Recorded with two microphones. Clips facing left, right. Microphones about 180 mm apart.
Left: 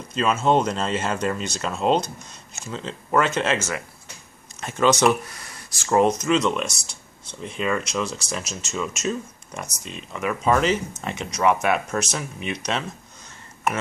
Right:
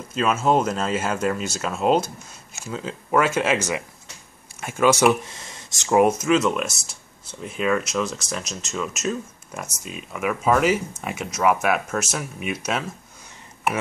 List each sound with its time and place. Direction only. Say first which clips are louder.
0.1 s speech: even; 5° right (ahead or behind)
5.2 s a sound: right 1 dB; 25° right (ahead or behind)
5.9 s speech: right 1 dB; 5° right (ahead or behind)